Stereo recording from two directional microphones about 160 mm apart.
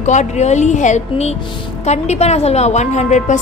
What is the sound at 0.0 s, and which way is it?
A woman's voice, 50° left (ahead or behind).